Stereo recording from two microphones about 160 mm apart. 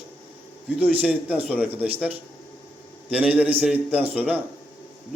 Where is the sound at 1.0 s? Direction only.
10° right (ahead or behind).